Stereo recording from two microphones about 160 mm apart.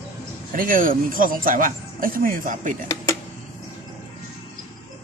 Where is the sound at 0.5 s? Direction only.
60° right (ahead or behind).